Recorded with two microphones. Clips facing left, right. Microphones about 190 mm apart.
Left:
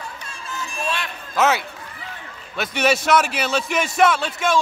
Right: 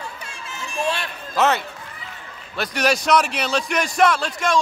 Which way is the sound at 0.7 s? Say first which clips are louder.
Right 4 dB; 30° right (ahead or behind).